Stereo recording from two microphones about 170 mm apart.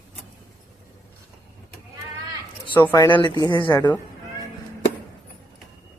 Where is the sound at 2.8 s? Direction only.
15° left (ahead or behind).